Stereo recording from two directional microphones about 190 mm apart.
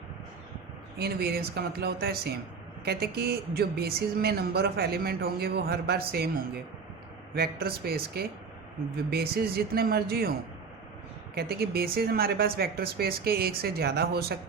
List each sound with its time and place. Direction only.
0.9 s speech: 55° right (ahead or behind)
7.3 s speech: 55° right (ahead or behind)
11.3 s speech: 55° right (ahead or behind)